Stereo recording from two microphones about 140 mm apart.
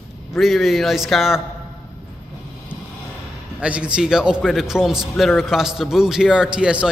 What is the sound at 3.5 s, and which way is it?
A man's voice, 10° right (ahead or behind).